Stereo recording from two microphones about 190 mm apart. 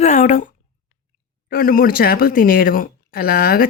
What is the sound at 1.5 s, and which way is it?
Speech, 50° left (ahead or behind).